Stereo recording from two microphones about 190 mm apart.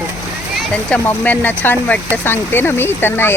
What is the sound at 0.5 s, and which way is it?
Speech, 5° left (ahead or behind).